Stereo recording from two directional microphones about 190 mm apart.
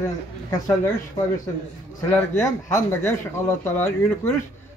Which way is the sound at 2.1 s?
15° left (ahead or behind).